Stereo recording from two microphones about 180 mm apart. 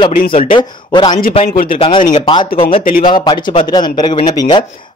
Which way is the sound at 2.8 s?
50° left (ahead or behind).